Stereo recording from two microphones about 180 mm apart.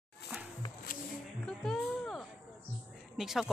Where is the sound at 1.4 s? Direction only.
5° left (ahead or behind).